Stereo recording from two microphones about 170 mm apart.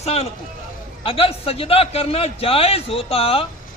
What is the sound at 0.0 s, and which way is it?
A man's voice, 35° left (ahead or behind).